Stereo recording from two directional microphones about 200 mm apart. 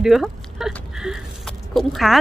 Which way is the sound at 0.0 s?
Centre (ahead or behind).